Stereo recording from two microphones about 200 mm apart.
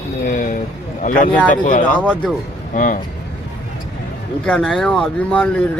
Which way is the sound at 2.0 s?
5° right (ahead or behind).